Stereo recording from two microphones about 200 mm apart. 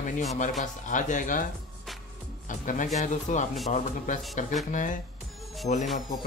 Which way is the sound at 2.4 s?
40° left (ahead or behind).